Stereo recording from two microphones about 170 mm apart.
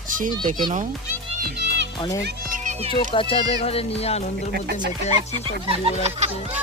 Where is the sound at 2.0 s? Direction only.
25° left (ahead or behind).